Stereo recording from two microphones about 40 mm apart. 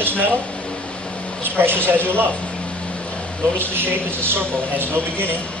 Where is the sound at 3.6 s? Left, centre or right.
Right.